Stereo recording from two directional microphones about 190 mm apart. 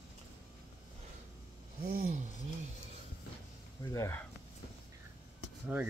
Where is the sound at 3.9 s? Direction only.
15° left (ahead or behind).